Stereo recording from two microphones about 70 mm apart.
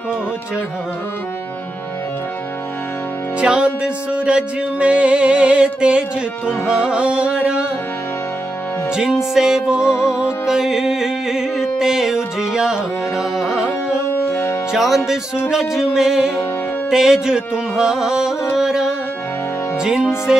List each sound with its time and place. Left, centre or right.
3.3 s music: centre
8.9 s music: centre
14.1 s music: left
14.7 s music: centre
20.3 s music: centre